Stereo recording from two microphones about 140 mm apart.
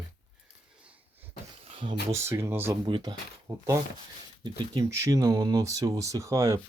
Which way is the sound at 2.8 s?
35° right (ahead or behind).